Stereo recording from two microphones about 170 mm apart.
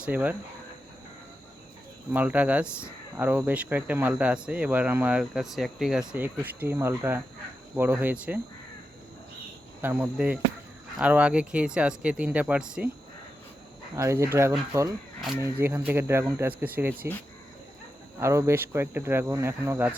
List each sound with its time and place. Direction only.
0.0 s speech: 10° right (ahead or behind)
2.1 s speech: 10° right (ahead or behind)
9.8 s speech: 10° right (ahead or behind)
13.9 s speech: 15° right (ahead or behind)
18.2 s speech: 15° right (ahead or behind)